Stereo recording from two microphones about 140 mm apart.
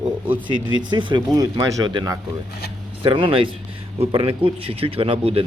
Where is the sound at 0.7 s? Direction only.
35° right (ahead or behind).